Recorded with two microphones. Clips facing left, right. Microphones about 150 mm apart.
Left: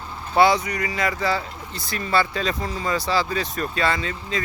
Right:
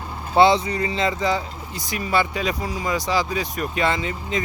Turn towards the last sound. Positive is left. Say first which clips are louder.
# right 2 dB
turn(degrees=-20)  # may be behind; listen again after turning